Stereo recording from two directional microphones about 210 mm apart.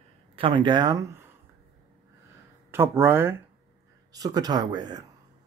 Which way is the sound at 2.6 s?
10° right (ahead or behind).